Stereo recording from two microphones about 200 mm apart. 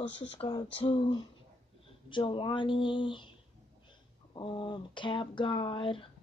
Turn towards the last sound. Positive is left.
turn(degrees=25)  # may be behind; listen again after turning